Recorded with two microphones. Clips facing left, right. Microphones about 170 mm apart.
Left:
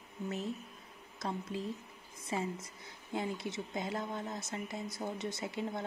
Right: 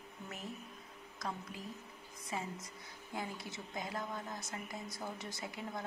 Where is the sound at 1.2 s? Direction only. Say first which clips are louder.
Left 6 dB; 25° left (ahead or behind).